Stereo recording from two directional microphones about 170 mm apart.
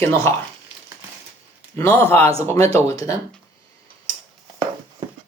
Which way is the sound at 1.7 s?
15° left (ahead or behind).